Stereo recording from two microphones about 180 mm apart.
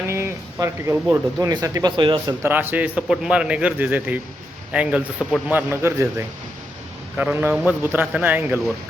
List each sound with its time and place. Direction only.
0.1 s speech: 15° right (ahead or behind)
2.4 s a man's voice: 10° right (ahead or behind)